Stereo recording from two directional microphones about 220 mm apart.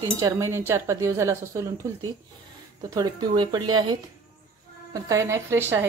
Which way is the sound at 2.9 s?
15° right (ahead or behind).